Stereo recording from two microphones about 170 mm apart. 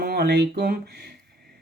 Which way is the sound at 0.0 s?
65° right (ahead or behind).